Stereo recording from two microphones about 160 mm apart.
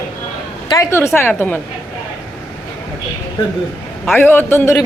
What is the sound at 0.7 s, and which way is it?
Speech, 20° left (ahead or behind).